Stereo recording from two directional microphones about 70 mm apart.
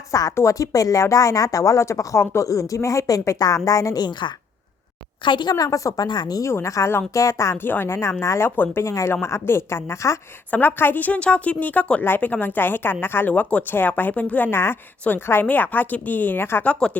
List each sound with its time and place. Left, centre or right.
0.1 s a woman's voice: left
5.4 s a woman's voice: left
6.1 s speech: left
6.4 s a woman's voice: left
7.5 s a woman's voice: left
8.4 s a woman's voice: left
8.8 s a woman's voice: left
10.5 s a woman's voice: left
16.6 s a woman's voice: centre